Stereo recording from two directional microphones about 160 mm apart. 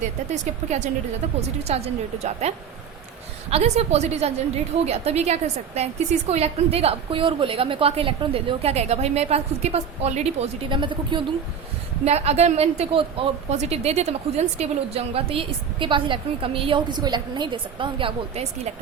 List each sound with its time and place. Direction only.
0.0 s a woman's voice: 45° right (ahead or behind)
3.5 s a woman's voice: 40° right (ahead or behind)
12.0 s a woman's voice: 40° right (ahead or behind)